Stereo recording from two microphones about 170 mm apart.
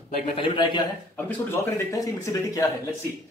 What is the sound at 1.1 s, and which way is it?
Speech, 15° left (ahead or behind).